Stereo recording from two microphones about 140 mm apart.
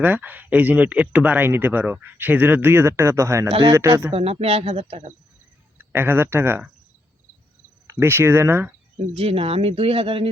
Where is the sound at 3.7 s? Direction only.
20° right (ahead or behind).